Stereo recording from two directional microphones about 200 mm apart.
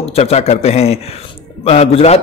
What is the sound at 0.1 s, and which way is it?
Speech, 30° left (ahead or behind).